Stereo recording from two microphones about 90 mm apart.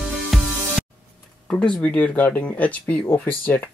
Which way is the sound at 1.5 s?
10° left (ahead or behind).